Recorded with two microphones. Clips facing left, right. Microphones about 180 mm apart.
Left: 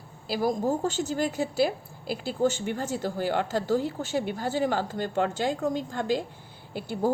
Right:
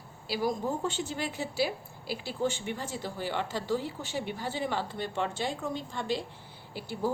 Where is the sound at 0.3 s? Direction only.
45° left (ahead or behind).